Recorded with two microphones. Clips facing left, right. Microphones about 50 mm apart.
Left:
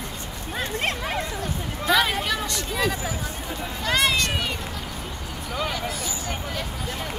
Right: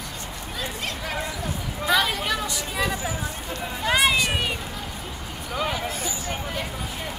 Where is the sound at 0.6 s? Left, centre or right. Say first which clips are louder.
Left 5 dB; left.